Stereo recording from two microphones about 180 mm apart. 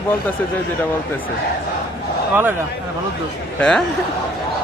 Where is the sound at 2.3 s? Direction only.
10° right (ahead or behind).